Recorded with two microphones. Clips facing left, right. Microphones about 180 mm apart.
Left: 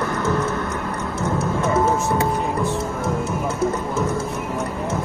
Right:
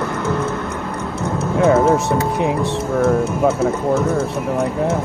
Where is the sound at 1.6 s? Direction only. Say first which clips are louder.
Right 7 dB; 70° right (ahead or behind).